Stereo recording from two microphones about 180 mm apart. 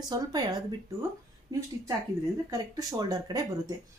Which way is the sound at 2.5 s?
20° right (ahead or behind).